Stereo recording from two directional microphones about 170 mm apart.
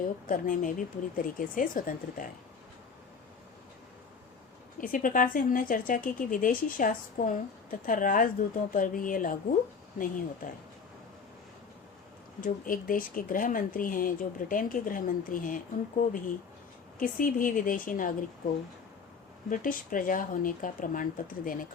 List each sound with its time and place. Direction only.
0.3 s speech: 55° left (ahead or behind)
4.8 s speech: 55° left (ahead or behind)
12.4 s speech: 55° left (ahead or behind)
19.5 s speech: 50° left (ahead or behind)